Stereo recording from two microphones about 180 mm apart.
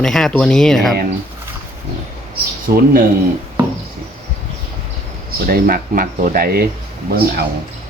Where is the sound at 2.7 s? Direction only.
55° right (ahead or behind).